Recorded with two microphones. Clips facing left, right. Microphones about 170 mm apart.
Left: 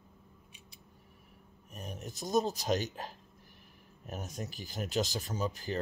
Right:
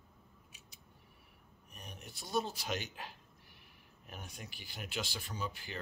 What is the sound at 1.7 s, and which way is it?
Speech, 45° left (ahead or behind).